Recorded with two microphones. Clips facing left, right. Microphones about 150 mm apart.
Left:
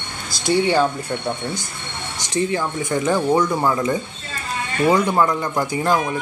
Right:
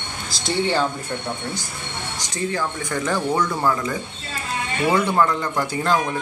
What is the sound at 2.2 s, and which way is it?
Speech, 20° left (ahead or behind).